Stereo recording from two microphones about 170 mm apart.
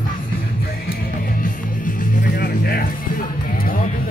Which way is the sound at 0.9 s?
55° left (ahead or behind).